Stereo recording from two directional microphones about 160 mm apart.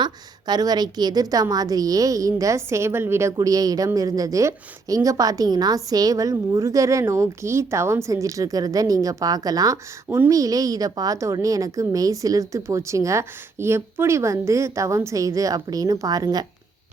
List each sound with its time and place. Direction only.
0.0 s a woman's voice: 25° right (ahead or behind)